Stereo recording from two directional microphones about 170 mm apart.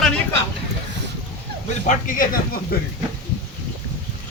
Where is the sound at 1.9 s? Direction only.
50° left (ahead or behind).